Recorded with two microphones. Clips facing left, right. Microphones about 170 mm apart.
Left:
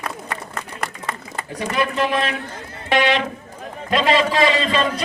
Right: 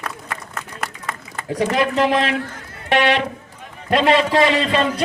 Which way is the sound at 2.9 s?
65° right (ahead or behind).